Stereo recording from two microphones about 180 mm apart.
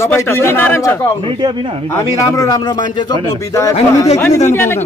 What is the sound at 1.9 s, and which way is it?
Speech, 20° left (ahead or behind).